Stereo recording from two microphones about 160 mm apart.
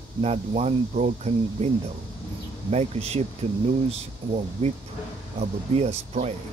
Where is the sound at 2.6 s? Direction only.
40° right (ahead or behind).